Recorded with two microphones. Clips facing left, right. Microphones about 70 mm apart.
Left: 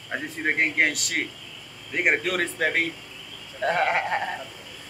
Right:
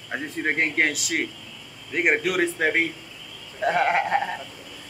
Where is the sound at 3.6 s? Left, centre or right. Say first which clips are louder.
Right 2 dB; centre.